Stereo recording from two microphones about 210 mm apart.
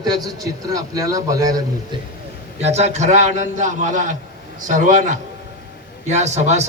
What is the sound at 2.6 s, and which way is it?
A man's voice, 30° right (ahead or behind).